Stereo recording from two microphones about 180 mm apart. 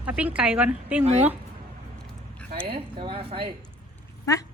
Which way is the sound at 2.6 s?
30° right (ahead or behind).